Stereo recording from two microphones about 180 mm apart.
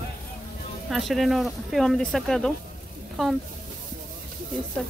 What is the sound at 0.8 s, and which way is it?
Speech, centre (ahead or behind).